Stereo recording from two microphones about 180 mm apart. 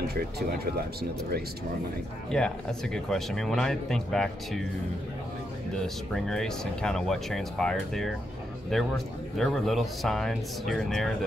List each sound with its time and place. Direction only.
0.1 s speech: 60° right (ahead or behind)
2.3 s speech: 5° left (ahead or behind)
5.8 s speech: 5° left (ahead or behind)